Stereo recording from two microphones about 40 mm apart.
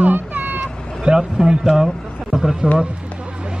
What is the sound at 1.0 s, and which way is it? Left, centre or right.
A man's voice, centre.